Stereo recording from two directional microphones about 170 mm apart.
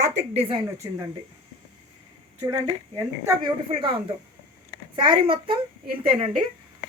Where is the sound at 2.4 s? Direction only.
20° right (ahead or behind).